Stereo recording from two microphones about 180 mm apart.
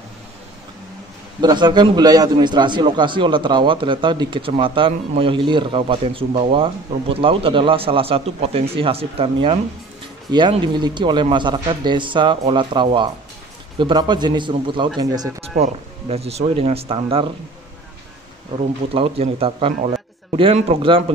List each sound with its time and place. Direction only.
1.4 s a man's voice: 25° right (ahead or behind)
15.5 s a man's voice: 35° right (ahead or behind)
18.6 s a man's voice: 30° right (ahead or behind)